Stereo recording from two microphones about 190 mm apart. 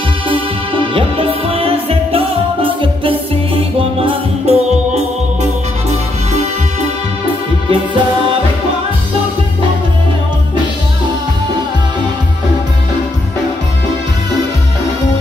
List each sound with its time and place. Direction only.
0.3 s music: 30° right (ahead or behind)